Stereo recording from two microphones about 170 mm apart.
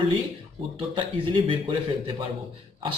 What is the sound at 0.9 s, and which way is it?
Speech, 30° right (ahead or behind).